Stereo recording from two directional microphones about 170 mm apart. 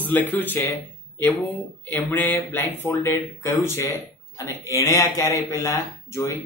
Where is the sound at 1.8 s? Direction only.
10° left (ahead or behind).